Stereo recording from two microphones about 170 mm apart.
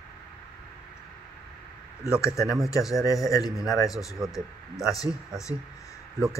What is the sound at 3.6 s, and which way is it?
Speech, 20° left (ahead or behind).